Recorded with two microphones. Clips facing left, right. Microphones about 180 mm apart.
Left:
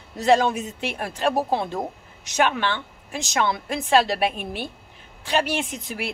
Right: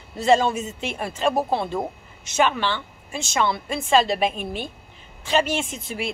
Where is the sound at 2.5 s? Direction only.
15° left (ahead or behind).